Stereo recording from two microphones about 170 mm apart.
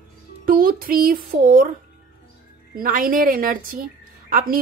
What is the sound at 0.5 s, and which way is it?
A woman's voice, 55° right (ahead or behind).